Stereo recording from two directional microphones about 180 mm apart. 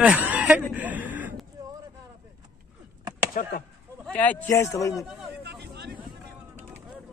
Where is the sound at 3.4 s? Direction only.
50° left (ahead or behind).